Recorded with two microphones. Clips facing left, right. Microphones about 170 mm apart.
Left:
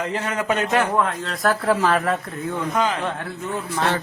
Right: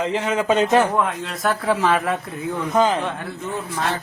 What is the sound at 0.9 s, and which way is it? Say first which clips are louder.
Speech: even; 5° right (ahead or behind).